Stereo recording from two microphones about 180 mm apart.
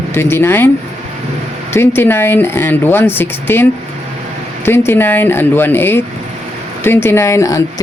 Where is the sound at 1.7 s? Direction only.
15° left (ahead or behind).